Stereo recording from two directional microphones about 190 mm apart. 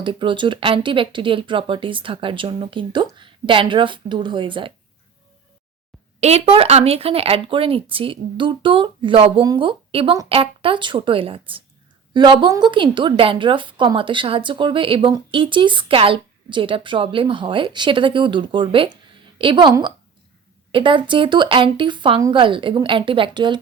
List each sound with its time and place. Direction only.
0.0 s a woman's voice: 25° right (ahead or behind)
6.1 s a woman's voice: 35° right (ahead or behind)